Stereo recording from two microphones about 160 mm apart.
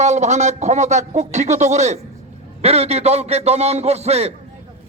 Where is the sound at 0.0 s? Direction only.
45° right (ahead or behind).